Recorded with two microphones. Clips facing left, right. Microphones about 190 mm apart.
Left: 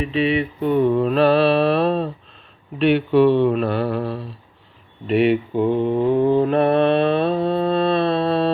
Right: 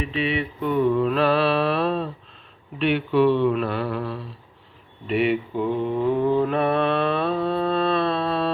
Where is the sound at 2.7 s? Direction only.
35° left (ahead or behind).